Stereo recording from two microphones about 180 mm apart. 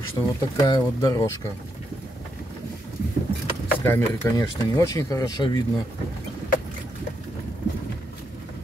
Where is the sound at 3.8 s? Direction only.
15° left (ahead or behind).